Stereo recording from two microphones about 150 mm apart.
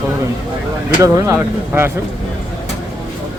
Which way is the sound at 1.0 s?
20° right (ahead or behind).